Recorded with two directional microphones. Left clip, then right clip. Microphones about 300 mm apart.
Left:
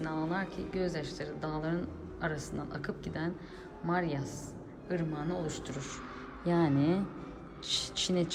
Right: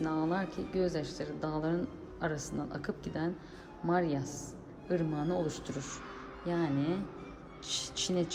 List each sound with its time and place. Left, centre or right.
0.0 s a woman's voice: centre
6.4 s a woman's voice: centre